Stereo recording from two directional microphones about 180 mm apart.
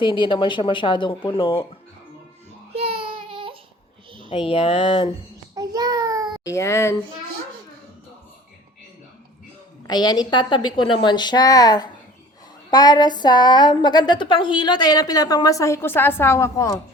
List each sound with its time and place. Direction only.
0.0 s a woman's voice: 25° left (ahead or behind)
2.7 s baby cry: 30° right (ahead or behind)
4.3 s speech: 30° left (ahead or behind)
5.5 s a sound: 20° right (ahead or behind)
6.4 s speech: 15° left (ahead or behind)
9.8 s a woman's voice: 25° left (ahead or behind)